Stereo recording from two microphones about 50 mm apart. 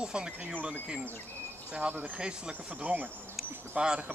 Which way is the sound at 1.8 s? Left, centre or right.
Right.